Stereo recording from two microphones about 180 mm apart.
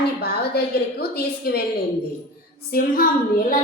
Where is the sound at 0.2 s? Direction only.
60° left (ahead or behind).